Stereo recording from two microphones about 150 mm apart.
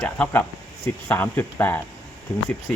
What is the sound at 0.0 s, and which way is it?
Speech, 15° left (ahead or behind).